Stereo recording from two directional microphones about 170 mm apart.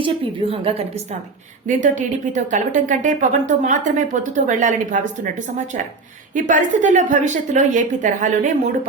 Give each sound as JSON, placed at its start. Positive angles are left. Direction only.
{"t": 0.0, "sound": "a woman's voice", "side_deg": -30}
{"t": 1.6, "sound": "a woman's voice", "side_deg": -45}